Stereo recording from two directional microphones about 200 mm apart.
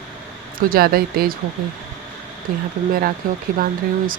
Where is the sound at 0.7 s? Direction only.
50° right (ahead or behind).